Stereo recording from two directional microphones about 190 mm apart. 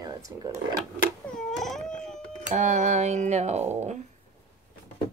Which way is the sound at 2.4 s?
35° right (ahead or behind).